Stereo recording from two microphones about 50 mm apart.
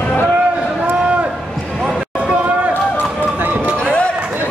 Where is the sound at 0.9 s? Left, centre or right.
Right.